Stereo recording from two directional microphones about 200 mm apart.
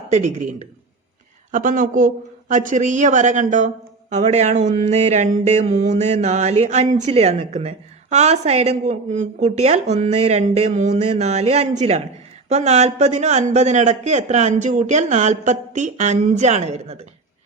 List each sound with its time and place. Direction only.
0.1 s a man's voice: 35° right (ahead or behind)